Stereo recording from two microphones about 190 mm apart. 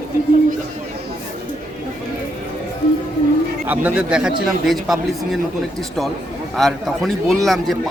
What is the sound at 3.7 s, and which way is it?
A man's voice, 10° right (ahead or behind).